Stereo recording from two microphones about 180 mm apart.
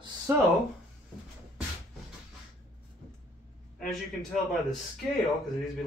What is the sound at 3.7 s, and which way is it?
A man's voice, centre (ahead or behind).